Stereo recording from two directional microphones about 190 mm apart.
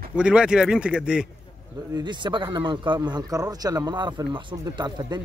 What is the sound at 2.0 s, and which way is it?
A man's voice, 25° right (ahead or behind).